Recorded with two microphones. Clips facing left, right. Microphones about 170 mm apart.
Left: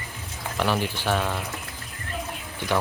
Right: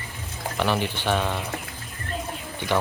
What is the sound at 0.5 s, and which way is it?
Speech, 5° left (ahead or behind).